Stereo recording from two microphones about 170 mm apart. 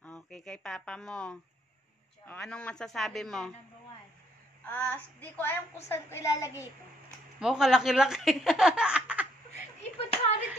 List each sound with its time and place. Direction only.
0.0 s speech: 5° left (ahead or behind)
4.6 s a woman's voice: 10° left (ahead or behind)
7.3 s speech: 5° right (ahead or behind)
9.9 s hands: 35° left (ahead or behind)